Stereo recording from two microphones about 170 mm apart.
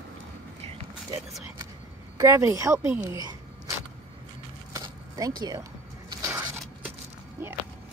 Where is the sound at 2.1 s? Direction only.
15° right (ahead or behind).